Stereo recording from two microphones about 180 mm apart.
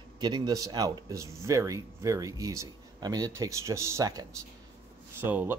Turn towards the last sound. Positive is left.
turn(degrees=-10)  # may be behind; listen again after turning